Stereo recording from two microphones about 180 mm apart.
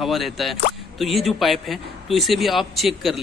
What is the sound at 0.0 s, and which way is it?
Speech, centre (ahead or behind).